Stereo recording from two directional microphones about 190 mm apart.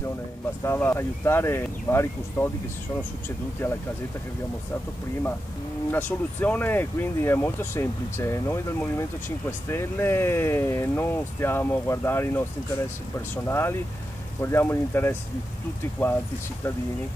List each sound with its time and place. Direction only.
0.7 s speech: 10° left (ahead or behind)
3.6 s speech: 10° left (ahead or behind)
5.9 s speech: 10° left (ahead or behind)